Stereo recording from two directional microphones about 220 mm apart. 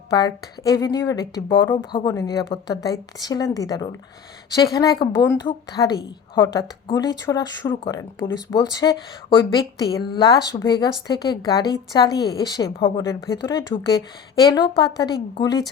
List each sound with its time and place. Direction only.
0.1 s a woman's voice: 15° left (ahead or behind)